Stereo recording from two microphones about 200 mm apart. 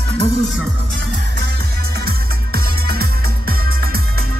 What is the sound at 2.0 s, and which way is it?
Music, 50° right (ahead or behind).